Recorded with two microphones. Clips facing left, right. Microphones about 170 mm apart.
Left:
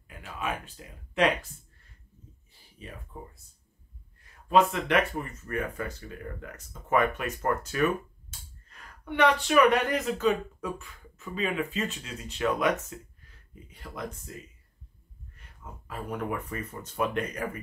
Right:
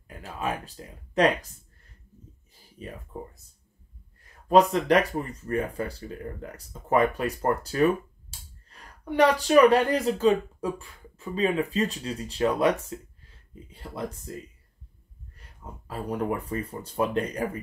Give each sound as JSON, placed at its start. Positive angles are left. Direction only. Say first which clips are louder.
{"t": 0.2, "sound": "speech", "louder": "right 3 dB", "side_deg": -35}
{"t": 4.5, "sound": "speech", "louder": "right 4 dB", "side_deg": -40}
{"t": 15.9, "sound": "speech", "louder": "right 4 dB", "side_deg": -35}